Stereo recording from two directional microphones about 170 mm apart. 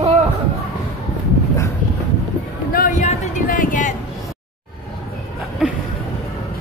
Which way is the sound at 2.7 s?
50° left (ahead or behind).